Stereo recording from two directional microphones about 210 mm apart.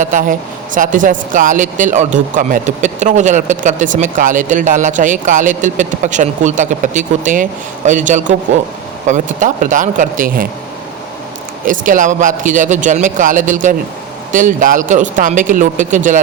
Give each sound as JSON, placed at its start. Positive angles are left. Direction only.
{"t": 0.0, "sound": "speech", "side_deg": -40}
{"t": 11.6, "sound": "speech", "side_deg": -40}